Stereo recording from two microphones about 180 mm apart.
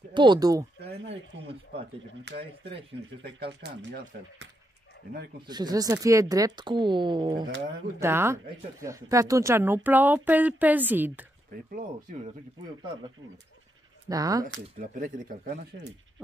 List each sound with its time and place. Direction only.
0.1 s speech: 25° right (ahead or behind)
0.7 s a sound: 85° right
2.3 s speech: 70° right (ahead or behind)
5.5 s speech: 20° right (ahead or behind)
8.0 s a woman's voice: 15° right (ahead or behind)
14.0 s speech: 20° right (ahead or behind)
14.8 s speech: 50° right (ahead or behind)